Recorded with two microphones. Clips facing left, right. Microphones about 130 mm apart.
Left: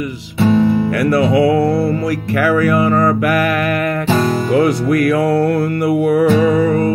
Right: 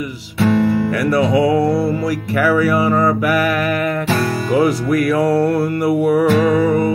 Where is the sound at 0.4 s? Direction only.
25° left (ahead or behind).